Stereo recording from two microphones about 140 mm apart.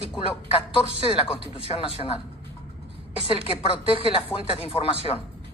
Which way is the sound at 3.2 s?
40° left (ahead or behind).